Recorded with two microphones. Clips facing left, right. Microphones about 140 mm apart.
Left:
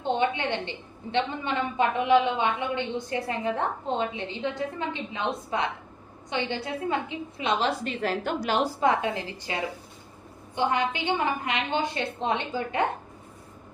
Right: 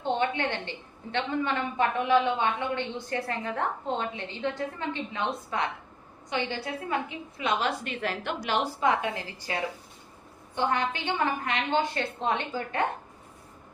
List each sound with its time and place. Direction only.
0.2 s a woman's voice: 20° left (ahead or behind)